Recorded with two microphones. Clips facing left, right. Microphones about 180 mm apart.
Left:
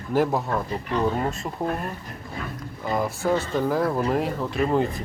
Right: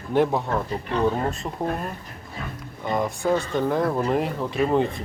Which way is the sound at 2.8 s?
5° left (ahead or behind).